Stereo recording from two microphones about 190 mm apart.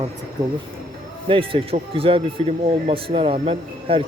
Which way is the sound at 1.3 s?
30° right (ahead or behind).